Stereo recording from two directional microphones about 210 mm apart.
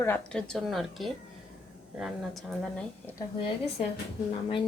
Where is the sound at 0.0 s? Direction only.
5° left (ahead or behind).